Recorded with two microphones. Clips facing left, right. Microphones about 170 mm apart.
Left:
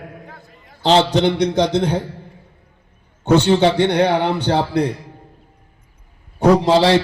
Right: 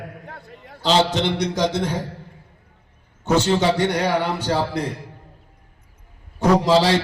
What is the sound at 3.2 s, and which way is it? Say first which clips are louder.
Speech: left 5 dB; 60° left (ahead or behind).